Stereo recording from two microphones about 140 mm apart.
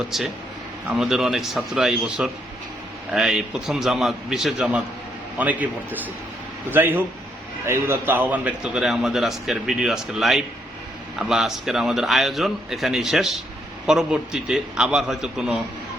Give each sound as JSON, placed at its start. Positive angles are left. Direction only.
{"t": 0.1, "sound": "a man's voice", "side_deg": 0}